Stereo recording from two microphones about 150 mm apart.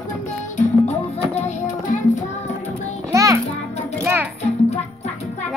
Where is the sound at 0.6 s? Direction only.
45° left (ahead or behind).